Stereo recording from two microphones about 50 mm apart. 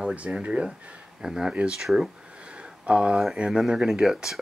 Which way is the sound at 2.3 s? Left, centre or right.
Right.